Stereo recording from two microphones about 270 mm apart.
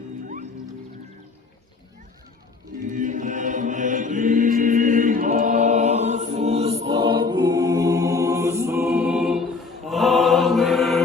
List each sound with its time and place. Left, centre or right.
2.8 s mantra: right; by 11.0 s centre